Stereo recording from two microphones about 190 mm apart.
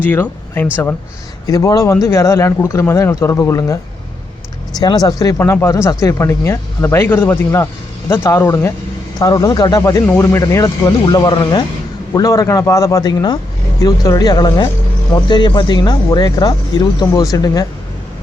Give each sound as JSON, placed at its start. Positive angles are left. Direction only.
{"t": 0.0, "sound": "speech", "side_deg": 10}
{"t": 4.8, "sound": "speech", "side_deg": 20}